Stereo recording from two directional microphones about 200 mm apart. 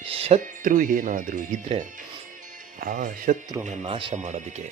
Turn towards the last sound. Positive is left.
turn(degrees=-35)  # may be behind; listen again after turning